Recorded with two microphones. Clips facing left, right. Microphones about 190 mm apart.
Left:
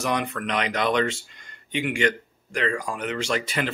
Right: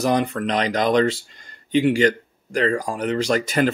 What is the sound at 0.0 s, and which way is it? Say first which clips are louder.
Speech: right 6 dB; 35° right (ahead or behind).